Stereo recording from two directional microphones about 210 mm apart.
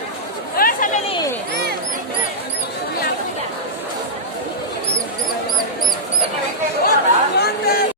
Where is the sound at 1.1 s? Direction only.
20° left (ahead or behind).